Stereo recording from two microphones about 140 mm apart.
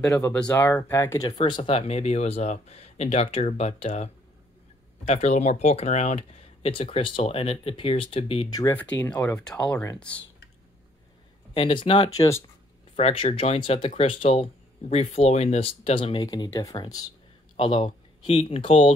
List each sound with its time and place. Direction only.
0.5 s speech: 15° left (ahead or behind)
1.4 s speech: 40° left (ahead or behind)
8.5 s speech: 25° left (ahead or behind)
8.7 s speech: 10° left (ahead or behind)
11.5 s speech: 40° left (ahead or behind)
17.6 s speech: 35° left (ahead or behind)